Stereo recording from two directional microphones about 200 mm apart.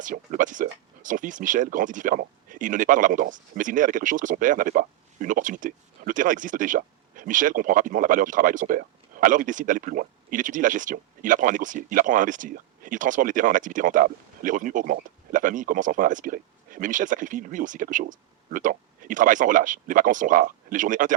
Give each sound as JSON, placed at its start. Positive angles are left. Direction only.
{"t": 0.0, "sound": "speech", "side_deg": -40}